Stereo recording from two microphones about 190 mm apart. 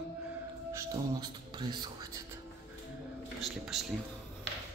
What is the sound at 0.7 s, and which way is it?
Speech, 20° right (ahead or behind).